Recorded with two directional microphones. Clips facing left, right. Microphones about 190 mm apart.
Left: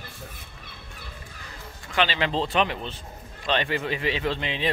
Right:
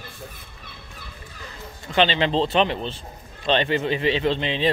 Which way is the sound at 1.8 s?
25° right (ahead or behind).